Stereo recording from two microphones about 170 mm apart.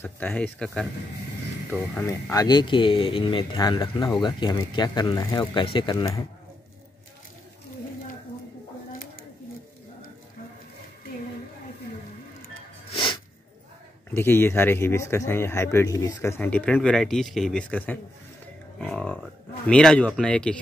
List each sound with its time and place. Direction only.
0.0 s speech: 10° left (ahead or behind)
2.3 s speech: 25° left (ahead or behind)
12.9 s sneeze: 30° left (ahead or behind)
14.1 s speech: 15° left (ahead or behind)